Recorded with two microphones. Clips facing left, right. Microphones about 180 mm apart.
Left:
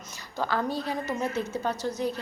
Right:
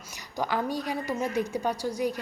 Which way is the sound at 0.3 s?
15° right (ahead or behind).